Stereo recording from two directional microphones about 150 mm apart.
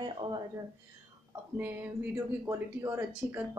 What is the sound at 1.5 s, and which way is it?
Speech, 10° right (ahead or behind).